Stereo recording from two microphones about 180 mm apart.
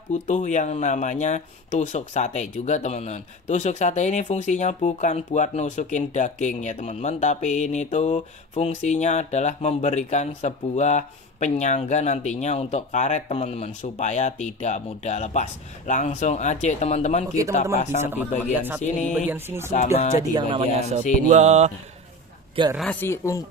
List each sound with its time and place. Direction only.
0.1 s speech: 40° left (ahead or behind)
18.0 s a man's voice: 10° right (ahead or behind)
19.7 s speech: 40° left (ahead or behind)
20.3 s speech: 30° right (ahead or behind)
21.3 s mantra: 40° right (ahead or behind)
22.8 s speech: 10° left (ahead or behind)